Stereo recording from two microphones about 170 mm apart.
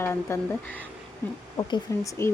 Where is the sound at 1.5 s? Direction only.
20° left (ahead or behind).